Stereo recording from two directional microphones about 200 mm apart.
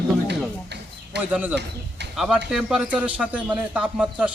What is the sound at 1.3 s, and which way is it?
A man's voice, 5° right (ahead or behind).